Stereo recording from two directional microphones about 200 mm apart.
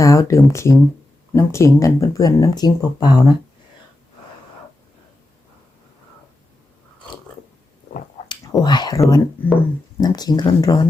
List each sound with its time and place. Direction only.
0.0 s speech: 15° left (ahead or behind)
8.3 s speech: 20° left (ahead or behind)